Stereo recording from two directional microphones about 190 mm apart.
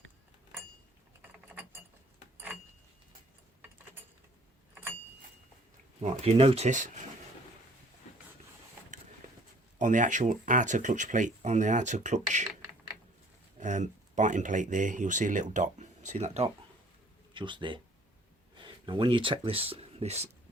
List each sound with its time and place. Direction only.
4.7 s keys jangling: 10° right (ahead or behind)
6.0 s speech: 35° right (ahead or behind)
9.7 s speech: 40° right (ahead or behind)
13.6 s speech: 40° right (ahead or behind)